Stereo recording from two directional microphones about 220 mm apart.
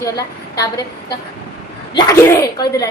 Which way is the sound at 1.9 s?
15° left (ahead or behind).